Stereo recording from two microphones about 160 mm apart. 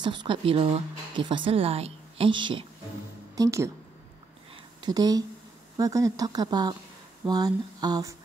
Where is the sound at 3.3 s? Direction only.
20° right (ahead or behind).